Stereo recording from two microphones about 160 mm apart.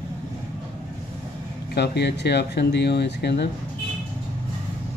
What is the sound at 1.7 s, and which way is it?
Speech, 90° left.